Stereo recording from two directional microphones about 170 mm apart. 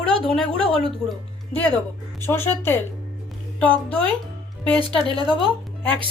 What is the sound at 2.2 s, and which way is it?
Speech, 15° left (ahead or behind).